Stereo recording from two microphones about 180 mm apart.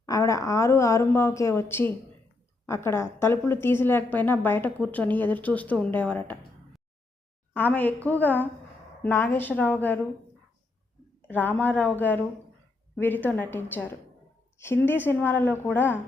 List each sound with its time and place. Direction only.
0.0 s a woman's voice: 20° left (ahead or behind)
7.5 s a woman's voice: 10° left (ahead or behind)
11.3 s a woman's voice: 10° left (ahead or behind)